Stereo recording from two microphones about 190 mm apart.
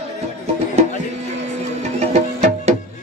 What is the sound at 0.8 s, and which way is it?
Music, 35° right (ahead or behind).